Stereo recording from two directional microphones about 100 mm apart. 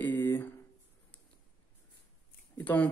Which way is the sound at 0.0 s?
20° left (ahead or behind).